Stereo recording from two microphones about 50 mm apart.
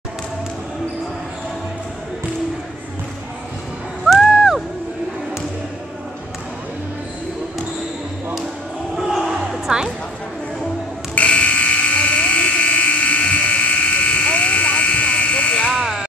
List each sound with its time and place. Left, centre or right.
4.1 s music: centre
4.4 s a sound: centre
8.9 s crowd: centre
9.5 s music: centre
11.1 s electric shaver: left
15.7 s a sound: centre